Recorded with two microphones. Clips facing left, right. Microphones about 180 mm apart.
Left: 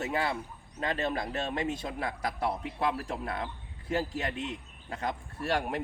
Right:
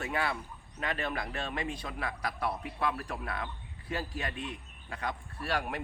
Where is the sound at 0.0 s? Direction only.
25° left (ahead or behind).